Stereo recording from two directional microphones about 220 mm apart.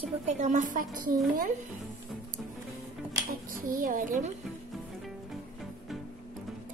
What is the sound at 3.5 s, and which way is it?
Speech, 40° right (ahead or behind).